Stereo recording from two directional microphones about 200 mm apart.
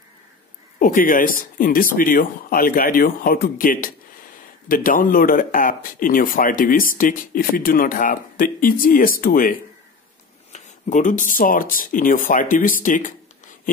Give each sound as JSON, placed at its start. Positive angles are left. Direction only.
{"t": 0.7, "sound": "speech", "side_deg": 45}